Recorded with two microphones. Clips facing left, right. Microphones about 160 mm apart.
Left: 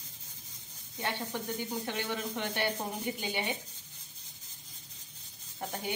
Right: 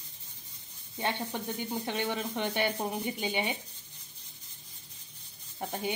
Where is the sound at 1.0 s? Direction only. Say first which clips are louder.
Right 2 dB; 20° right (ahead or behind).